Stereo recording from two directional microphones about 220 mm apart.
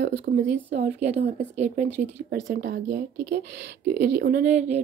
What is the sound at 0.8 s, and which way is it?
Speech, 30° right (ahead or behind).